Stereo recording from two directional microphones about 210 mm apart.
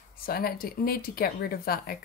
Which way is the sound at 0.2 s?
45° left (ahead or behind).